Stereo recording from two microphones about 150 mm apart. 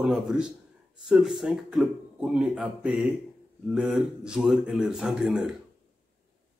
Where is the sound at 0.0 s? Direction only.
5° right (ahead or behind).